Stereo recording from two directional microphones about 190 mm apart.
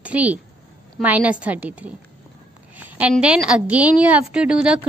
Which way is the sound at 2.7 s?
10° right (ahead or behind).